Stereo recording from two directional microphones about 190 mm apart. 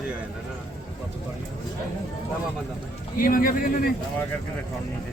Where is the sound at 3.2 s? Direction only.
50° left (ahead or behind).